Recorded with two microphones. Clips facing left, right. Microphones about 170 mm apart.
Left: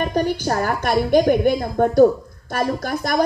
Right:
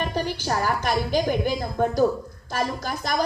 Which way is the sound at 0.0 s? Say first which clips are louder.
Left 6 dB; 50° left (ahead or behind).